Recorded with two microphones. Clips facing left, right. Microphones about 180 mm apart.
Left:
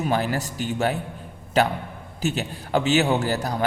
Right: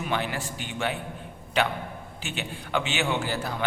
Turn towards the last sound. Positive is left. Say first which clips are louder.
# left 5 dB
turn(degrees=40)  # may be behind; listen again after turning